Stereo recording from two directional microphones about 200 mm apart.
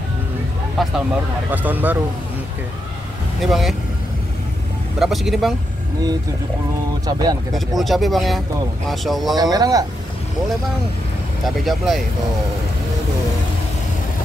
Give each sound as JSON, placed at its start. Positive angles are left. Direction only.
{"t": 0.8, "sound": "speech", "side_deg": 0}
{"t": 3.3, "sound": "speech", "side_deg": 0}
{"t": 4.9, "sound": "speech", "side_deg": 0}
{"t": 7.1, "sound": "speech", "side_deg": -20}
{"t": 7.5, "sound": "speech", "side_deg": 0}
{"t": 9.3, "sound": "speech", "side_deg": -20}
{"t": 11.4, "sound": "speech", "side_deg": 0}